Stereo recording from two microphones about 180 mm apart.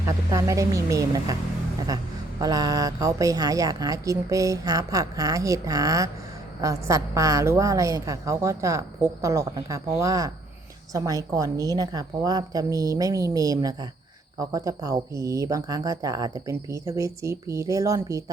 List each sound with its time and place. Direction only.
0.0 s speech: 20° right (ahead or behind)
2.4 s a woman's voice: 20° right (ahead or behind)